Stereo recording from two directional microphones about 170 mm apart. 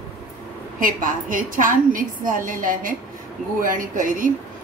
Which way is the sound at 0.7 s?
55° right (ahead or behind).